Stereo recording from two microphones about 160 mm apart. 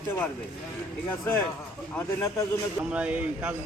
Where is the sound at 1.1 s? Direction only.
10° left (ahead or behind).